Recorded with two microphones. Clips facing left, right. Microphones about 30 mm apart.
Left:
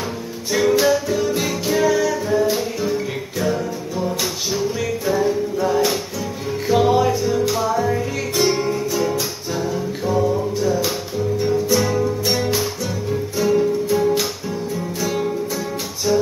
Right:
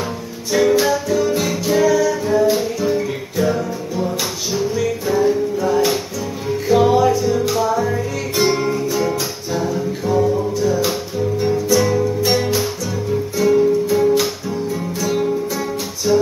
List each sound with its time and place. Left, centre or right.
0.5 s music: centre
7.0 s music: centre
7.3 s music: centre
11.7 s music: left
12.2 s music: centre
16.1 s music: centre